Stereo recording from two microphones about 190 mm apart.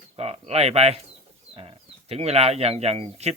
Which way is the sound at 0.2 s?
35° right (ahead or behind).